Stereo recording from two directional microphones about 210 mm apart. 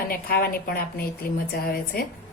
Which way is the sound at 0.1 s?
45° left (ahead or behind).